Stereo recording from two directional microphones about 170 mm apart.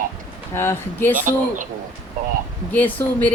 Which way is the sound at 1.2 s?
50° right (ahead or behind).